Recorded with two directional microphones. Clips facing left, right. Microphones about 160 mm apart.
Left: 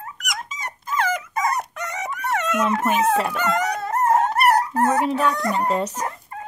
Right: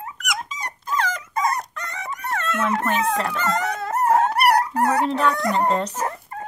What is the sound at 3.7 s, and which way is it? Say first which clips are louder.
Dog: right 2 dB; 10° right (ahead or behind).